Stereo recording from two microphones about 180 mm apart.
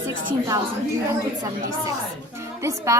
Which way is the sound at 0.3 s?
20° right (ahead or behind).